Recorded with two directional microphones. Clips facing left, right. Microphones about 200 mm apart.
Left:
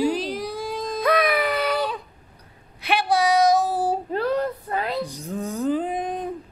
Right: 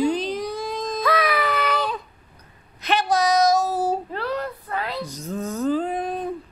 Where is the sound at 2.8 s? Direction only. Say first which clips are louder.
Even; 10° left (ahead or behind).